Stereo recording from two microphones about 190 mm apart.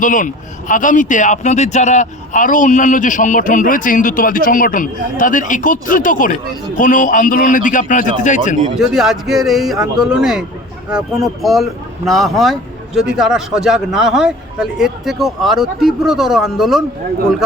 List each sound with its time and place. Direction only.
0.0 s a man's voice: 45° left (ahead or behind)
8.8 s speech: centre (ahead or behind)